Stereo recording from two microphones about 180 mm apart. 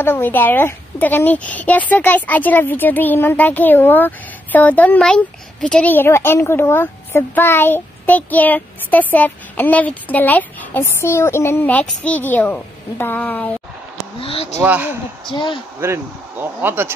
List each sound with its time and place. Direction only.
0.0 s a woman's voice: 10° left (ahead or behind)
14.2 s speech: 30° left (ahead or behind)
14.6 s speech: 10° right (ahead or behind)
15.3 s speech: 25° left (ahead or behind)
15.8 s speech: 10° right (ahead or behind)